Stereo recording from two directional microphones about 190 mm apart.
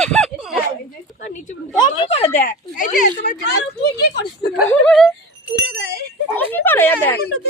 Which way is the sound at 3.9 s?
60° left (ahead or behind).